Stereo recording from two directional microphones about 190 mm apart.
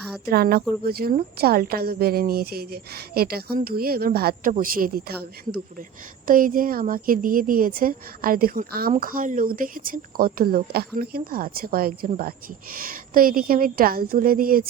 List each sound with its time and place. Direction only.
0.3 s a woman's voice: 55° right (ahead or behind)